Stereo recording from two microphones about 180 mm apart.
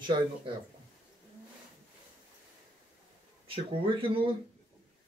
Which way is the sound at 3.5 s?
30° right (ahead or behind).